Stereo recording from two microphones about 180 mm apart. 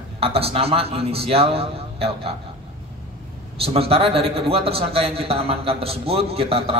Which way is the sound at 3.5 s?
35° right (ahead or behind).